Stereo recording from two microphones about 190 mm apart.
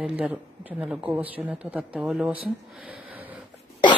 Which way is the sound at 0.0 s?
5° right (ahead or behind).